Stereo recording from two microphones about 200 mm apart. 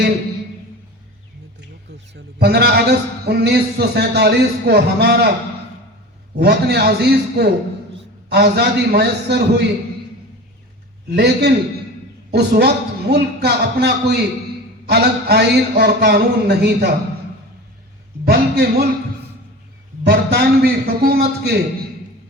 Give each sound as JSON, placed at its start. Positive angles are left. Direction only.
{"t": 2.1, "sound": "a man's voice", "side_deg": -55}
{"t": 6.4, "sound": "a man's voice", "side_deg": -55}
{"t": 11.1, "sound": "a man's voice", "side_deg": -55}
{"t": 18.3, "sound": "a man's voice", "side_deg": -55}
{"t": 20.1, "sound": "a man's voice", "side_deg": -55}